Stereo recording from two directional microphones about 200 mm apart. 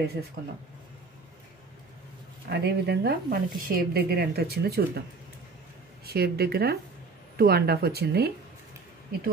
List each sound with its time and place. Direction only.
0.4 s speech: 50° right (ahead or behind)
2.5 s speech: 55° right (ahead or behind)
6.0 s speech: 50° right (ahead or behind)